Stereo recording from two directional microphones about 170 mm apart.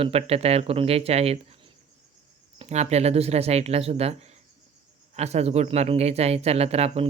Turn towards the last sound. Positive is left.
turn(degrees=-35)  # may be behind; listen again after turning